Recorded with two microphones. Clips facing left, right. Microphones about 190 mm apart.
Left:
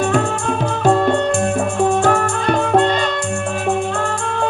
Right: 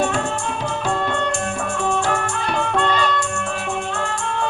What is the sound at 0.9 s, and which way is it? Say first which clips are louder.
Music: left 10 dB; 40° left (ahead or behind).